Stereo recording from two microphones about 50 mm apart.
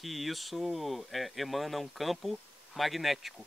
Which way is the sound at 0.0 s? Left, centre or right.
Centre.